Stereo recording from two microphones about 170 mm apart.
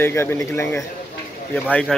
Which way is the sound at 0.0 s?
15° left (ahead or behind).